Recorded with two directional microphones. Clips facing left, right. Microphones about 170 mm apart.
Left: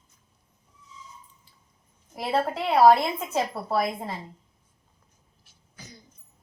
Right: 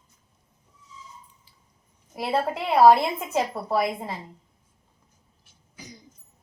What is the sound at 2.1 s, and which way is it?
A woman's voice, 10° right (ahead or behind).